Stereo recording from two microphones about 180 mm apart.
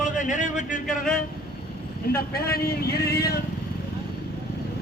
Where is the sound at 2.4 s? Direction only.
60° left (ahead or behind).